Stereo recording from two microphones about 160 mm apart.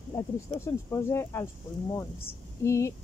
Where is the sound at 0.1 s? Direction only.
20° left (ahead or behind).